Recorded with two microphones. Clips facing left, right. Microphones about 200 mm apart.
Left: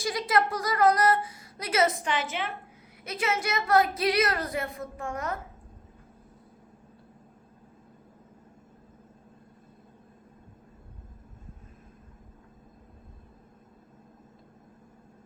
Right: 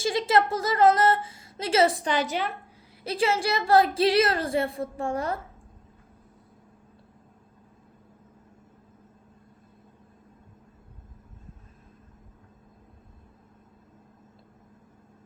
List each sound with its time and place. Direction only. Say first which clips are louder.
0.0 s a woman's voice: right 3 dB; 25° right (ahead or behind)